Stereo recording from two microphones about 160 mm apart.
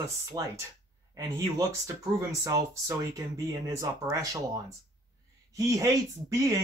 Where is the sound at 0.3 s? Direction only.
20° right (ahead or behind).